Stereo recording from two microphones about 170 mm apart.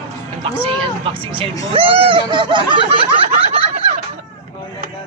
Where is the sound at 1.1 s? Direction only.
30° right (ahead or behind).